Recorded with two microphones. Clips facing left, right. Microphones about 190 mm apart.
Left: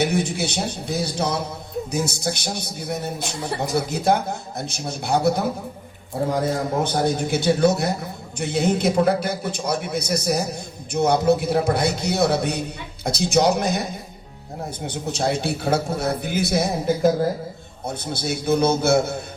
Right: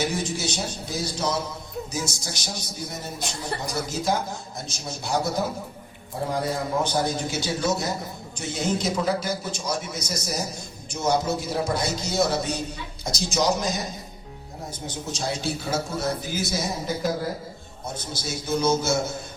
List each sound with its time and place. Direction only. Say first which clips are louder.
0.0 s a man's voice: left 5 dB; 60° left (ahead or behind)
6.8 s a man's voice: left 4 dB; 55° left (ahead or behind)
14.8 s a man's voice: left 6 dB; 60° left (ahead or behind)